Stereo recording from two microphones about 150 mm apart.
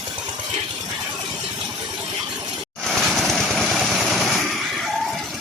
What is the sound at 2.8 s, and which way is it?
Vehicle, centre (ahead or behind).